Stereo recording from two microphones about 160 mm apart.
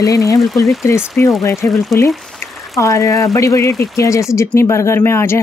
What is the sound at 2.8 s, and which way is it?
Speech, 20° left (ahead or behind).